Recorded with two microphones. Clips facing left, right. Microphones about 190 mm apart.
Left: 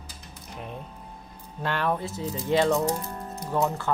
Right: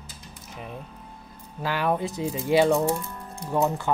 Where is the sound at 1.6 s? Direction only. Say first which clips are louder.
Right 2 dB; 5° right (ahead or behind).